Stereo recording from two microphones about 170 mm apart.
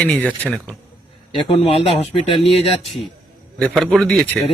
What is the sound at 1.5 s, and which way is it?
Speech, 35° left (ahead or behind).